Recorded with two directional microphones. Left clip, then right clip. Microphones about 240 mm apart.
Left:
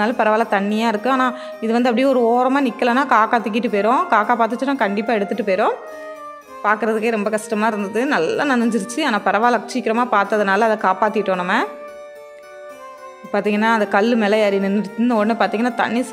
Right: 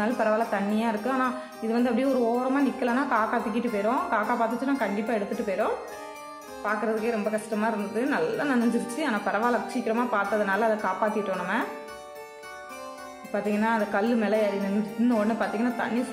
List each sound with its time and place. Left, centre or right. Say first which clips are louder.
0.2 s a woman's voice: left 9 dB; left
6.6 s a woman's voice: left 9 dB; left
13.3 s a woman's voice: left 9 dB; left